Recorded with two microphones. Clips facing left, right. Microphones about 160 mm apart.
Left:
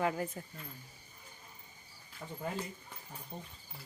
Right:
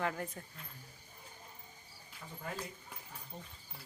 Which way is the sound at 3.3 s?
30° left (ahead or behind).